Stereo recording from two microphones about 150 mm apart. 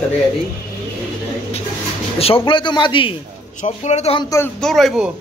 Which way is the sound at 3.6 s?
50° left (ahead or behind).